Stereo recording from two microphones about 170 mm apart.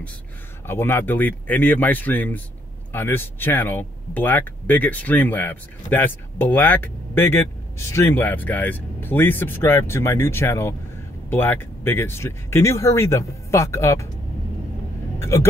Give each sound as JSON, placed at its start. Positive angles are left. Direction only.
{"t": 0.7, "sound": "speech", "side_deg": 15}
{"t": 15.1, "sound": "speech", "side_deg": 15}